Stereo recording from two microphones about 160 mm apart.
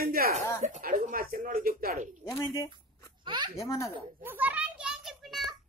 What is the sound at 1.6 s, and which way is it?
Speech, 65° right (ahead or behind).